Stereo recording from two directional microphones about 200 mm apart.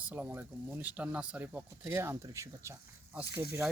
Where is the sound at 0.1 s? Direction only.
10° right (ahead or behind).